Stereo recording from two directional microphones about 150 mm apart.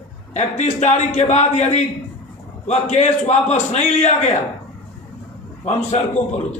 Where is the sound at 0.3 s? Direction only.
50° left (ahead or behind).